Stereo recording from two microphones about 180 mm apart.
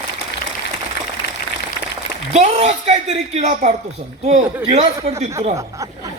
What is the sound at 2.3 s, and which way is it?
A man's voice, 40° right (ahead or behind).